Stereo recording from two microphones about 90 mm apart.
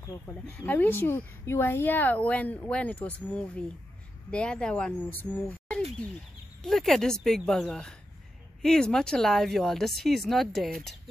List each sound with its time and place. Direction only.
0.7 s a woman's voice: 20° left (ahead or behind); by 11.0 s centre (ahead or behind)